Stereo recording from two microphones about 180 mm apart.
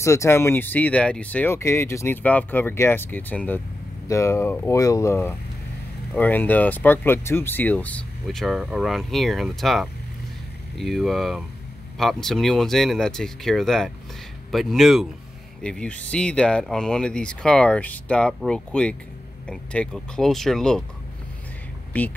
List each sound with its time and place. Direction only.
0.0 s speech: 15° left (ahead or behind)
21.9 s speech: 10° left (ahead or behind)